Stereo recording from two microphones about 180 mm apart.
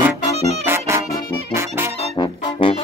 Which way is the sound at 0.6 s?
15° right (ahead or behind).